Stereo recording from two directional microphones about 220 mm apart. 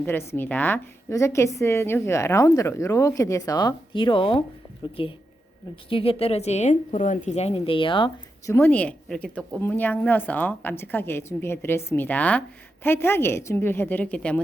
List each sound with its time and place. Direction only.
0.0 s speech: 10° left (ahead or behind)